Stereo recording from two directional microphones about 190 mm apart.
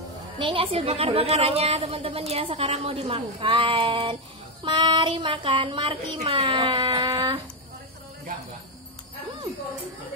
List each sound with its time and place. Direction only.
0.4 s a woman's voice: 25° right (ahead or behind)